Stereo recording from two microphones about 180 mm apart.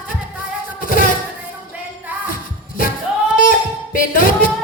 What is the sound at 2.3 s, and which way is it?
Music, 50° left (ahead or behind).